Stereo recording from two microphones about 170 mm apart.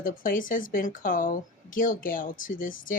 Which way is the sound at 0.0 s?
55° left (ahead or behind).